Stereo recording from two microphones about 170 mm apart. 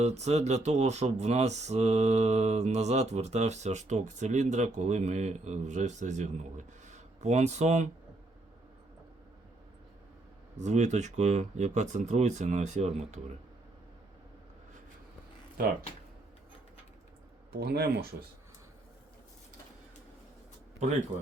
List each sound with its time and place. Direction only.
0.0 s speech: 40° right (ahead or behind)
10.6 s speech: 45° right (ahead or behind)
17.5 s speech: 70° right (ahead or behind)